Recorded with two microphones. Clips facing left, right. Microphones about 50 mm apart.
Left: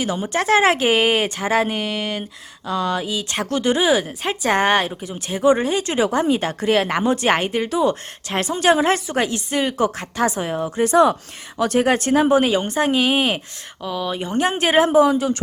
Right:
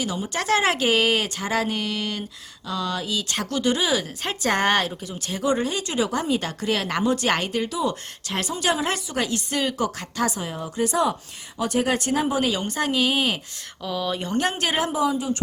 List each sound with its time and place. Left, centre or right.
0.0 s a woman's voice: left
4.2 s a woman's voice: centre
5.0 s a woman's voice: left
7.7 s a woman's voice: left
12.5 s a woman's voice: left
13.8 s a woman's voice: centre
14.5 s a woman's voice: left
14.9 s speech: left